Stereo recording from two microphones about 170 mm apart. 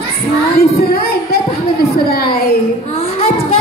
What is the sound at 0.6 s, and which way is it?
Speech, 65° left (ahead or behind).